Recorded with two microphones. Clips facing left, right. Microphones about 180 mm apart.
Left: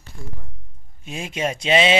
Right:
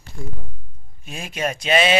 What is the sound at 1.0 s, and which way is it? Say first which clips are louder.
Speech: left 1 dB; 20° left (ahead or behind).